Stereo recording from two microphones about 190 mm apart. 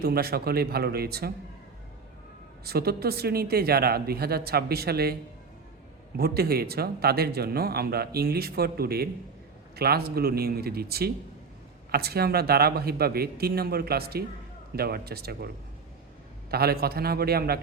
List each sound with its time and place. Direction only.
0.0 s speech: 55° right (ahead or behind)
2.6 s speech: 55° right (ahead or behind)
6.1 s speech: 55° right (ahead or behind)
16.5 s speech: 55° right (ahead or behind)